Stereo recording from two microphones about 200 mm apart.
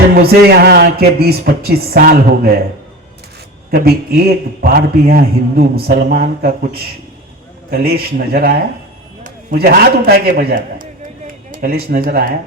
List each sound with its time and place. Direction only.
0.2 s a man's voice: 50° right (ahead or behind)
3.7 s a man's voice: 50° right (ahead or behind)
7.7 s a man's voice: 50° right (ahead or behind)